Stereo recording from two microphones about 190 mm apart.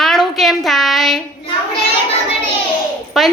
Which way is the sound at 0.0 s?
Centre (ahead or behind).